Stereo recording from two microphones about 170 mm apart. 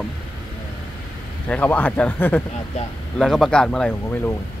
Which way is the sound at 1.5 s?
10° left (ahead or behind).